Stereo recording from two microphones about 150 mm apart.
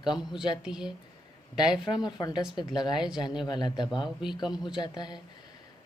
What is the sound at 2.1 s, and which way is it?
Speech, 30° left (ahead or behind).